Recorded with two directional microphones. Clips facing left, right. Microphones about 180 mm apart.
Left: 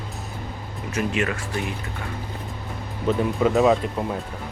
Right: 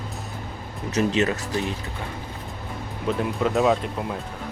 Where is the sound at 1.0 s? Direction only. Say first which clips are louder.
Right 3 dB; 25° right (ahead or behind).